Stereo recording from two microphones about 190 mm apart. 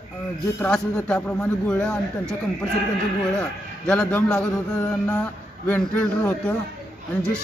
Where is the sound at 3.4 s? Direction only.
5° left (ahead or behind).